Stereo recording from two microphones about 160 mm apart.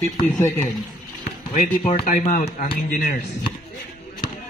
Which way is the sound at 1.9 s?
50° left (ahead or behind).